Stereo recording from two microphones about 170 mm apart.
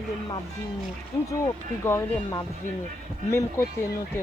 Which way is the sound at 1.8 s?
15° left (ahead or behind).